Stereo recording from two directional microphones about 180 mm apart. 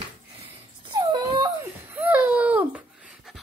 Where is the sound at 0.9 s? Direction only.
30° right (ahead or behind).